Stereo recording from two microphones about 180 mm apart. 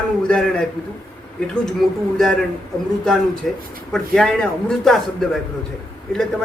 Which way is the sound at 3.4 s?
Centre (ahead or behind).